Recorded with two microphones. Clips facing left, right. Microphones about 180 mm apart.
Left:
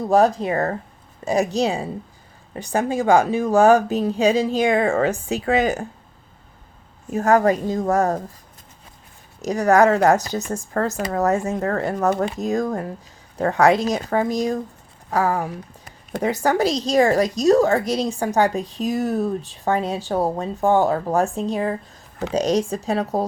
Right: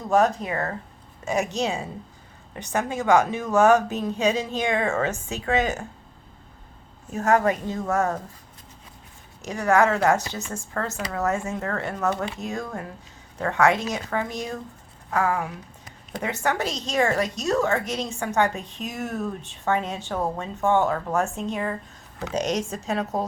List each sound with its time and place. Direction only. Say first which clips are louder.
0.1 s a woman's voice: left 4 dB; 35° left (ahead or behind)
7.1 s a woman's voice: left 4 dB; 35° left (ahead or behind)
9.4 s a woman's voice: left 5 dB; 40° left (ahead or behind)